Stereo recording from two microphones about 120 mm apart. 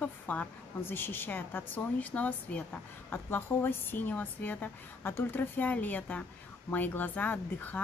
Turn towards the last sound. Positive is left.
turn(degrees=15)  # may be behind; listen again after turning